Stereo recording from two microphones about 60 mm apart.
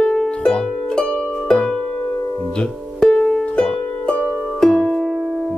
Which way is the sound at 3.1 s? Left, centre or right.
Centre.